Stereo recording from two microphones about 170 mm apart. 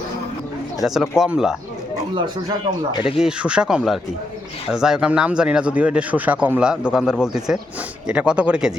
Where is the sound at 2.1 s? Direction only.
25° right (ahead or behind).